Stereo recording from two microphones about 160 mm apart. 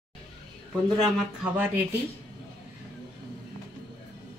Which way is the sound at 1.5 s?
10° right (ahead or behind).